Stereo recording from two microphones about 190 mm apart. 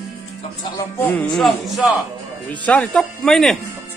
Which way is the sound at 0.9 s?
10° left (ahead or behind).